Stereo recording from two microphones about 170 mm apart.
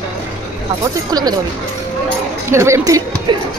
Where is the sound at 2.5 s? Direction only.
15° right (ahead or behind).